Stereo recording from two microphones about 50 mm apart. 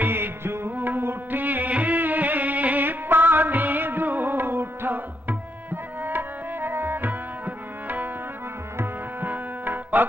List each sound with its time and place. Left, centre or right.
0.0 s music: right
9.2 s music: right